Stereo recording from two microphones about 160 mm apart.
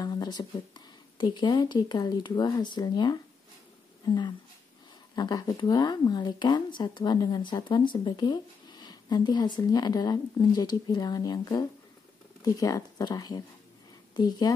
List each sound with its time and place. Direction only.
0.0 s speech: 25° left (ahead or behind)
5.1 s speech: 25° left (ahead or behind)